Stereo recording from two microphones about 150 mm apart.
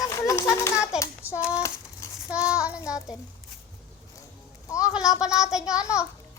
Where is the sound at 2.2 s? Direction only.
5° right (ahead or behind).